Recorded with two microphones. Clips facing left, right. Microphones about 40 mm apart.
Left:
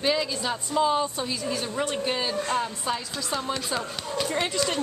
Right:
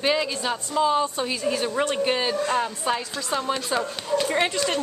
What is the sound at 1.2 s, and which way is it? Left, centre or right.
Speech, right.